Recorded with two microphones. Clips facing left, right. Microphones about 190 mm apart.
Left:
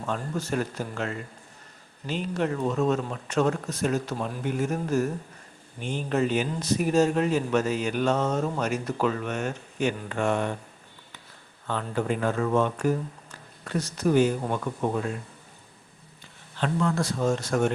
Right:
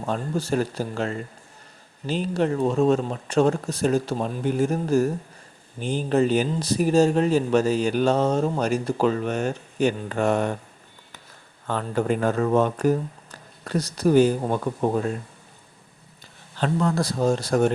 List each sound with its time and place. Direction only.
0.0 s speech: 35° right (ahead or behind)
11.7 s speech: 45° right (ahead or behind)
16.6 s speech: 40° right (ahead or behind)